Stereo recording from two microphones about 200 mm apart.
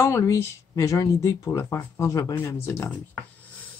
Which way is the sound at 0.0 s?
15° left (ahead or behind).